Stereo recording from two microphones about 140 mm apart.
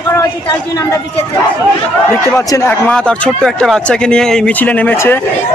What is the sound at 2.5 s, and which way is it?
Speech, 20° left (ahead or behind).